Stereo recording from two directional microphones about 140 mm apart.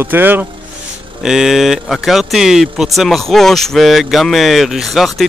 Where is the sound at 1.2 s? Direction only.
5° right (ahead or behind).